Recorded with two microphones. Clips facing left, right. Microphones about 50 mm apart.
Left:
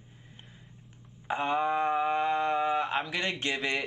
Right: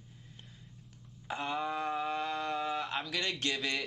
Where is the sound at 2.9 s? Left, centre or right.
Centre.